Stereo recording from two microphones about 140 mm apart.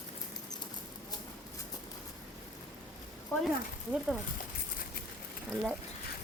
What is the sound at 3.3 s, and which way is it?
Speech, 15° left (ahead or behind).